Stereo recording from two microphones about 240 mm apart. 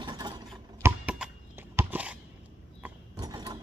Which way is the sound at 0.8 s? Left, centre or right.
Centre.